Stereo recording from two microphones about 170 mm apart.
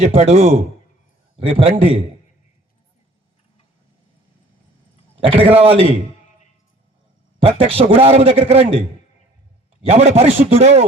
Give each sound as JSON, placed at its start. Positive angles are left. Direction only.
{"t": 0.0, "sound": "a man's voice", "side_deg": -40}
{"t": 5.1, "sound": "a man's voice", "side_deg": -30}
{"t": 7.4, "sound": "a man's voice", "side_deg": -35}
{"t": 9.8, "sound": "a man's voice", "side_deg": -40}